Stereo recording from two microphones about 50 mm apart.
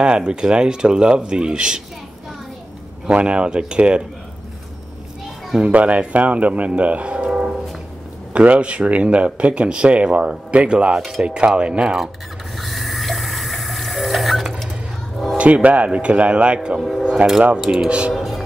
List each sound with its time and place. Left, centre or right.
0.0 s speech: centre
3.1 s speech: right
5.6 s speech: right
12.5 s water: centre
15.3 s speech: right
17.2 s speech: right
17.6 s speech: centre
18.1 s music: centre